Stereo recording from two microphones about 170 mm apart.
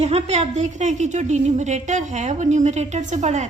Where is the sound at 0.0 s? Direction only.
40° right (ahead or behind).